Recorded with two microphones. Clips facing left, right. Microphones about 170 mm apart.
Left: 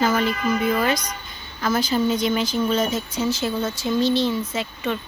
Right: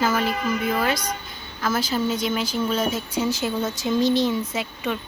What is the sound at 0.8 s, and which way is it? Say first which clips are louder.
Speech: left 1 dB; 5° right (ahead or behind).